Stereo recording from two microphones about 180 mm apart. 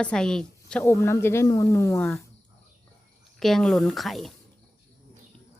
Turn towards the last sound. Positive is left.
turn(degrees=0)  # may be behind; listen again after turning